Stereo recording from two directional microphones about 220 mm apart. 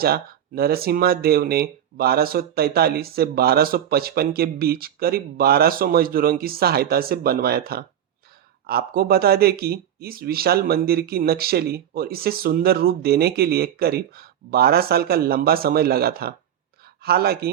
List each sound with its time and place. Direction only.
0.0 s speech: 45° right (ahead or behind)